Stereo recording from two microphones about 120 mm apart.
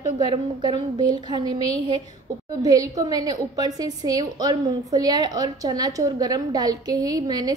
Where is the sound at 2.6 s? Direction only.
30° right (ahead or behind).